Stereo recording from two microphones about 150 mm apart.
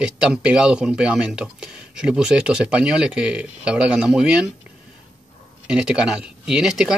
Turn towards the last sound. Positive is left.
turn(degrees=-5)  # may be behind; listen again after turning